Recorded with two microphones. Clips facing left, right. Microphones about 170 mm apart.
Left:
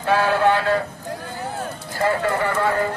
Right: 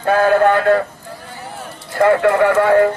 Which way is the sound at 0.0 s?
50° right (ahead or behind).